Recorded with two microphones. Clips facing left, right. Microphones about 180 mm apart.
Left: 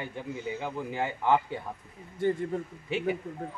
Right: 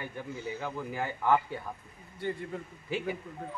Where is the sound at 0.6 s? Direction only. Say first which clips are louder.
Left 2 dB; 20° left (ahead or behind).